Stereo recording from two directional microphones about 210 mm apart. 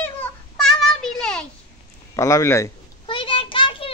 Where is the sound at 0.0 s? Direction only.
5° left (ahead or behind).